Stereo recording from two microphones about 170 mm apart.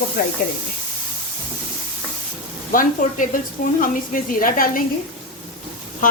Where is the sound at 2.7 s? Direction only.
55° left (ahead or behind).